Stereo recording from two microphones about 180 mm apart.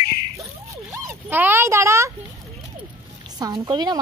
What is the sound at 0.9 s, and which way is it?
Speech, 10° right (ahead or behind).